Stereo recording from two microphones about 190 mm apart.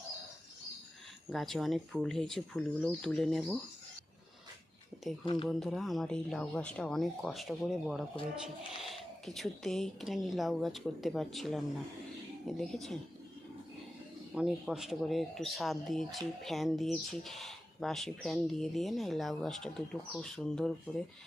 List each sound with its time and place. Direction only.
1.3 s speech: centre (ahead or behind)
5.2 s speech: 30° left (ahead or behind)
5.5 s speech: centre (ahead or behind)
14.3 s speech: 5° right (ahead or behind)